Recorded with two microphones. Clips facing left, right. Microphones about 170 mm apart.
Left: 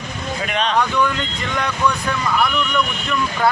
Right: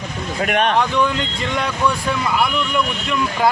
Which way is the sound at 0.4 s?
55° right (ahead or behind).